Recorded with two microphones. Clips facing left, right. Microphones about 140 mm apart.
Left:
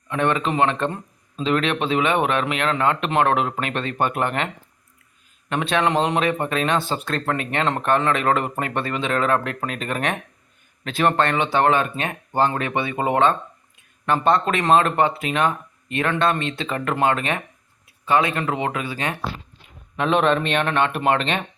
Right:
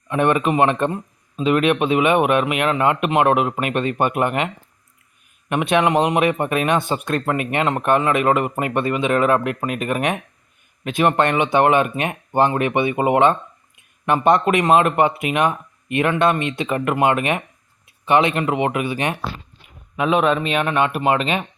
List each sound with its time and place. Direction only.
0.1 s a man's voice: 15° right (ahead or behind)
5.5 s a man's voice: 15° right (ahead or behind)
20.0 s a man's voice: 5° right (ahead or behind)